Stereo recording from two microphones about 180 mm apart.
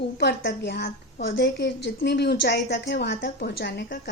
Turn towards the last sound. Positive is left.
turn(degrees=65)  # may be behind; listen again after turning